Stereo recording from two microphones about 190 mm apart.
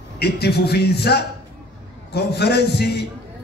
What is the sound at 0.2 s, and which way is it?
A man's voice, 60° left (ahead or behind).